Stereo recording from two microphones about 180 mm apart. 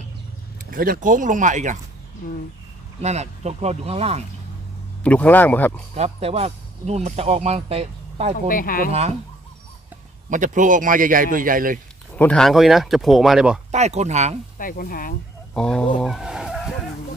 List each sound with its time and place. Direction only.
0.7 s a man's voice: 50° right (ahead or behind)
3.0 s speech: 40° right (ahead or behind)
5.0 s speech: 10° left (ahead or behind)
5.9 s speech: 35° right (ahead or behind)
8.5 s speech: 50° left (ahead or behind)
10.3 s a man's voice: 45° right (ahead or behind)
12.2 s speech: 5° left (ahead or behind)
13.7 s speech: 40° right (ahead or behind)
14.6 s speech: 50° left (ahead or behind)
15.5 s speech: 5° left (ahead or behind)
16.0 s vehicle: centre (ahead or behind)